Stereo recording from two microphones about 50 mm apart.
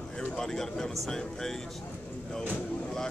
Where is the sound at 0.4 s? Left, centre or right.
Centre.